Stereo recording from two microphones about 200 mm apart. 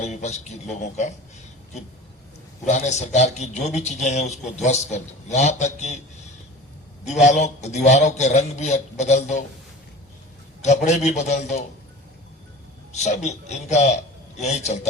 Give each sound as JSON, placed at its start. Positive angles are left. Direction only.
{"t": 0.0, "sound": "a man's voice", "side_deg": 35}
{"t": 2.6, "sound": "a man's voice", "side_deg": 35}
{"t": 7.0, "sound": "a man's voice", "side_deg": 35}
{"t": 10.8, "sound": "a man's voice", "side_deg": 35}
{"t": 12.9, "sound": "a man's voice", "side_deg": 35}